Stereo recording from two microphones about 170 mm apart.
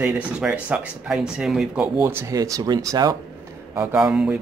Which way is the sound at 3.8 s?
5° right (ahead or behind).